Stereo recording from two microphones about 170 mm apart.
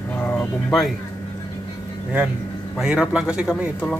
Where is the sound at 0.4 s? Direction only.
Centre (ahead or behind).